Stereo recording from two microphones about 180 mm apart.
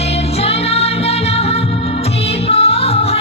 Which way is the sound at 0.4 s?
35° left (ahead or behind).